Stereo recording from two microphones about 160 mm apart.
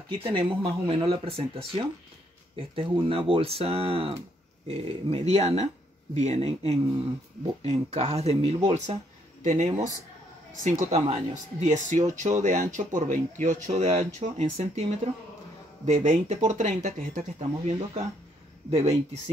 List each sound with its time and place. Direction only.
0.1 s speech: 30° right (ahead or behind)
2.7 s speech: 35° right (ahead or behind)